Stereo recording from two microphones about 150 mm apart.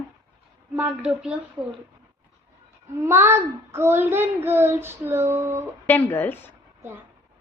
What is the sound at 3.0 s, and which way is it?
Child singing, 15° right (ahead or behind).